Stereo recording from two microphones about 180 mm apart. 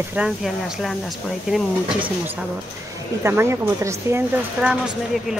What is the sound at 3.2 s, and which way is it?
Speech, 15° right (ahead or behind).